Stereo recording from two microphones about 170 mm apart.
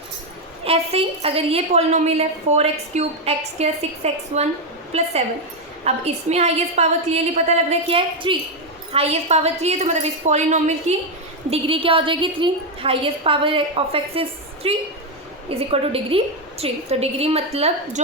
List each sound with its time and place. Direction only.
0.6 s a woman's voice: 35° right (ahead or behind)